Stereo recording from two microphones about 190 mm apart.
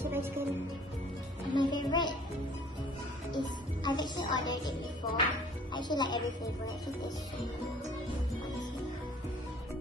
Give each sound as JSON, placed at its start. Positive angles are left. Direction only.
{"t": 0.0, "sound": "music", "side_deg": -10}
{"t": 1.5, "sound": "music", "side_deg": 25}
{"t": 3.3, "sound": "music", "side_deg": 25}
{"t": 5.7, "sound": "speech", "side_deg": 25}